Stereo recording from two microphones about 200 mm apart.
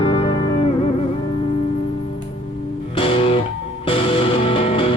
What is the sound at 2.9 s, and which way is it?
Music, 25° left (ahead or behind).